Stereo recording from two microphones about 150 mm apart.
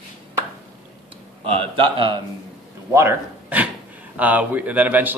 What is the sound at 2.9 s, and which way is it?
A man's voice, 15° right (ahead or behind).